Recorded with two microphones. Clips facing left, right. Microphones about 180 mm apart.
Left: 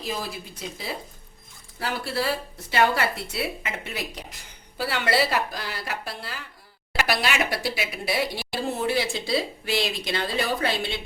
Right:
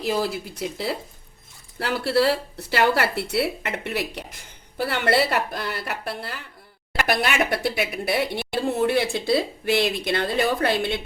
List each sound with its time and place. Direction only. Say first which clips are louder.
0.0 s speech: right 7 dB; 70° right (ahead or behind); by 11.0 s 55° right (ahead or behind)